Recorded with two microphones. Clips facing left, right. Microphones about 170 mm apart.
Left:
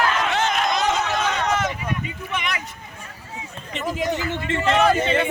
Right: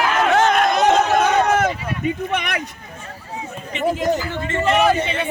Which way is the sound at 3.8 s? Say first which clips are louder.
Right 5 dB; 55° right (ahead or behind).